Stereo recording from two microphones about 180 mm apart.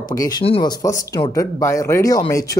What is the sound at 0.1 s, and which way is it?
Speech, 20° left (ahead or behind).